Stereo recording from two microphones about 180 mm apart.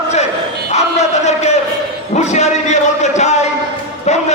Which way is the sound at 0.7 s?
40° left (ahead or behind).